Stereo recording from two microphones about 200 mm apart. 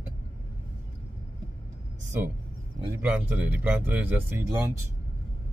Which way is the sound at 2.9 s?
10° right (ahead or behind).